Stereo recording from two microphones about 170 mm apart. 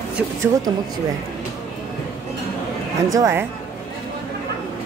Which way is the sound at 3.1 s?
15° right (ahead or behind).